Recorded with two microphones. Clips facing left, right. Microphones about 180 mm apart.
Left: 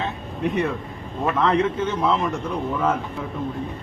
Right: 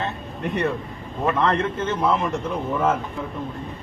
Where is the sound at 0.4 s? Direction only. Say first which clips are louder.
Left 1 dB; centre (ahead or behind).